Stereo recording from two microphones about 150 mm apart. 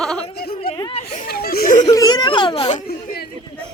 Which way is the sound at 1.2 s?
90° left.